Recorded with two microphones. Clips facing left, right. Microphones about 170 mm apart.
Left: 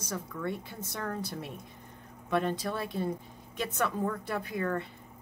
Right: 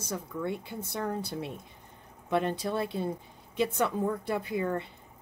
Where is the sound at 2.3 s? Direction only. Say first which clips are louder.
Right 1 dB; 20° right (ahead or behind).